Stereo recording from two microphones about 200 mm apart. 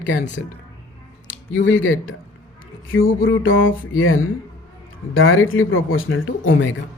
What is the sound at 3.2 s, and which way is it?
Speech, 75° left (ahead or behind).